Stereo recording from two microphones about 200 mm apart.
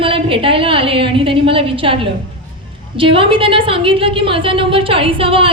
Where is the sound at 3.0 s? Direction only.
25° right (ahead or behind).